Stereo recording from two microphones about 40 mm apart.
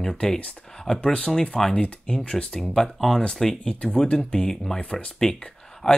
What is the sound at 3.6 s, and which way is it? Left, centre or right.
Speech, left.